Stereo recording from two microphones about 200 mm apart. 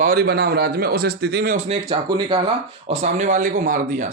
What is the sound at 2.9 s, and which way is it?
Speech, 35° right (ahead or behind).